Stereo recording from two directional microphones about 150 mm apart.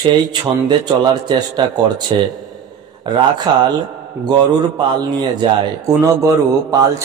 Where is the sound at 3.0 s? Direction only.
30° right (ahead or behind).